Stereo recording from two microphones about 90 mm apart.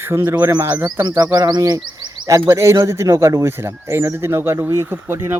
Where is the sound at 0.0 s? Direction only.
25° right (ahead or behind).